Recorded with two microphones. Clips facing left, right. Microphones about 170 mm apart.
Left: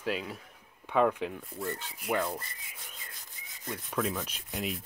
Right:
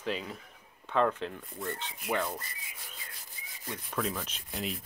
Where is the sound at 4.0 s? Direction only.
Centre (ahead or behind).